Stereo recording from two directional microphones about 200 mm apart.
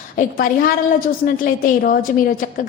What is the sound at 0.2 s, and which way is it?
A woman's voice, 45° left (ahead or behind).